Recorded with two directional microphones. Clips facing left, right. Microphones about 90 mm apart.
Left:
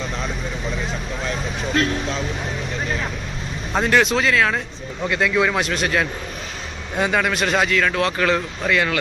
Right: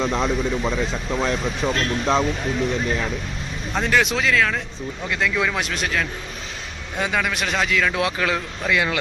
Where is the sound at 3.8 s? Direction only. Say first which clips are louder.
Left 3 dB; centre (ahead or behind).